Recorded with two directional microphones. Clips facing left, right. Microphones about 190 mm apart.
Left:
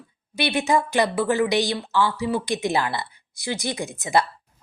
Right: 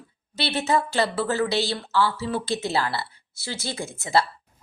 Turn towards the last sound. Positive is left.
turn(degrees=15)  # may be behind; listen again after turning